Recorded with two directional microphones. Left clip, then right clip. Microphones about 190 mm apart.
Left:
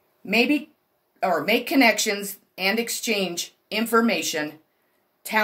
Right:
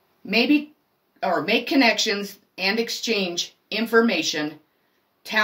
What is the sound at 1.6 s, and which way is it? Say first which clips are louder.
Speech: even; 50° left (ahead or behind).